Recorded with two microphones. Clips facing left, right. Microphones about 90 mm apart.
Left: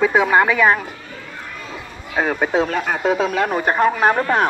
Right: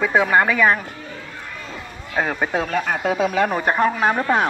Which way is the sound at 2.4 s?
20° left (ahead or behind).